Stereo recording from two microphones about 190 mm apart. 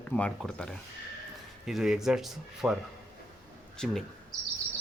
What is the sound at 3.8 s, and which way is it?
Speech, 5° left (ahead or behind).